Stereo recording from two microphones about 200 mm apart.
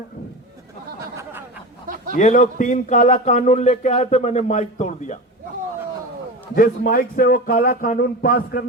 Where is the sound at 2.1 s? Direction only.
40° left (ahead or behind).